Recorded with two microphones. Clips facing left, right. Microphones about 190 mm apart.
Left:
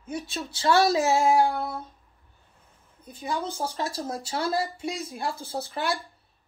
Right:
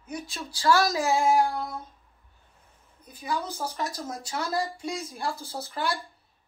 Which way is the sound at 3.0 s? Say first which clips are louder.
Left 1 dB; 25° left (ahead or behind).